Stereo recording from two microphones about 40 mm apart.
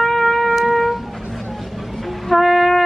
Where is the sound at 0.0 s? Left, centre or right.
Centre.